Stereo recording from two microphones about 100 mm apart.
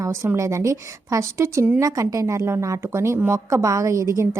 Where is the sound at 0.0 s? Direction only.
30° right (ahead or behind).